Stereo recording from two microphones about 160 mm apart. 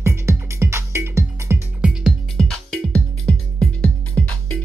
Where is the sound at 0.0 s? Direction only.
15° right (ahead or behind).